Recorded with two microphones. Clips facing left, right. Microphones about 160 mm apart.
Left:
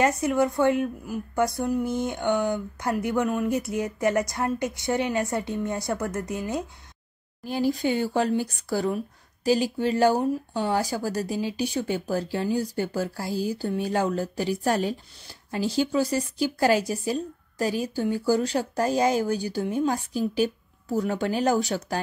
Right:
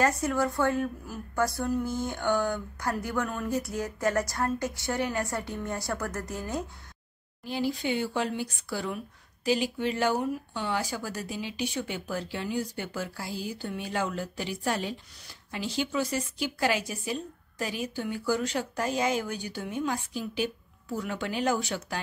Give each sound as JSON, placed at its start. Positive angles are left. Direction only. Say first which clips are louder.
{"t": 0.0, "sound": "a woman's voice", "louder": "left 4 dB", "side_deg": 20}
{"t": 7.4, "sound": "speech", "louder": "left 5 dB", "side_deg": 45}